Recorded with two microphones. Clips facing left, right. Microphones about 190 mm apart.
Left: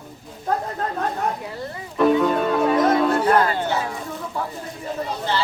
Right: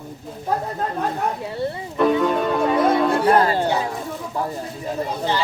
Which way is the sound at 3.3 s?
30° right (ahead or behind).